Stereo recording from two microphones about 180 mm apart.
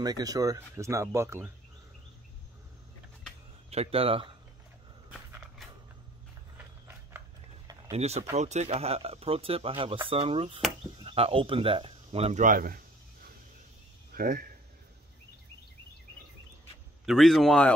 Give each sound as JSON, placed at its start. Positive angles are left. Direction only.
{"t": 0.0, "sound": "speech", "side_deg": -20}
{"t": 3.7, "sound": "speech", "side_deg": -35}
{"t": 7.1, "sound": "a sound", "side_deg": -15}
{"t": 7.9, "sound": "speech", "side_deg": -35}
{"t": 12.4, "sound": "a sound", "side_deg": -55}
{"t": 14.1, "sound": "speech", "side_deg": -55}
{"t": 17.0, "sound": "speech", "side_deg": 0}